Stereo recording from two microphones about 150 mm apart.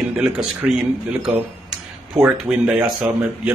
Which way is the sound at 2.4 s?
10° right (ahead or behind).